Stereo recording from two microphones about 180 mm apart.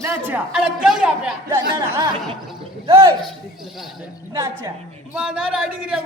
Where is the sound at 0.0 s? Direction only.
15° right (ahead or behind).